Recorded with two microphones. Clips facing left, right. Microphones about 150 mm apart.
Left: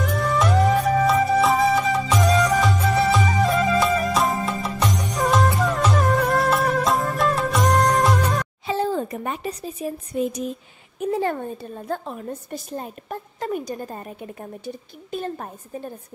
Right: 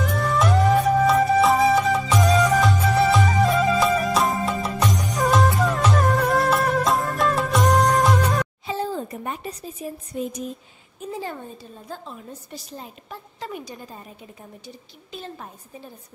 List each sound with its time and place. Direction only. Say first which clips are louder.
0.0 s music: even; centre (ahead or behind)
8.6 s a sound: left 4 dB; 70° left (ahead or behind)
11.0 s a woman's voice: left 8 dB; 60° left (ahead or behind)